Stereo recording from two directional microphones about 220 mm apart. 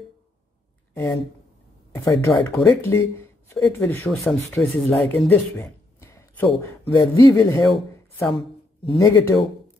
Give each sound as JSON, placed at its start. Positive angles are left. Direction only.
{"t": 0.9, "sound": "speech", "side_deg": 10}
{"t": 2.2, "sound": "speech", "side_deg": 15}